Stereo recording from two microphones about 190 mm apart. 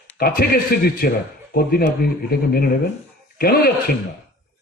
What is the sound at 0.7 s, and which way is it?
A man's voice, 55° left (ahead or behind).